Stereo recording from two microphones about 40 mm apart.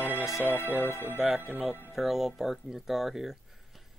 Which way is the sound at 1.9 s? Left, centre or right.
Centre.